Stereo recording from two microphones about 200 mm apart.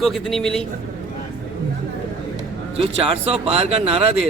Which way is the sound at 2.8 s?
30° right (ahead or behind).